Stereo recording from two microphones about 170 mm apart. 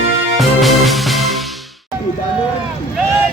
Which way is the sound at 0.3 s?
Centre (ahead or behind).